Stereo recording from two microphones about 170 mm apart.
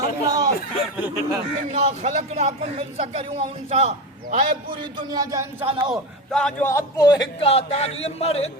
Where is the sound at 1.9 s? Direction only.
40° right (ahead or behind).